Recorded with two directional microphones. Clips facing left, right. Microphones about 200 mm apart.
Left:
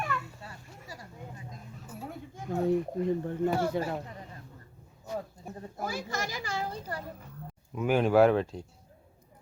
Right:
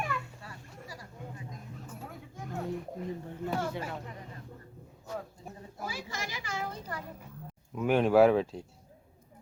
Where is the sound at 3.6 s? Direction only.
35° left (ahead or behind).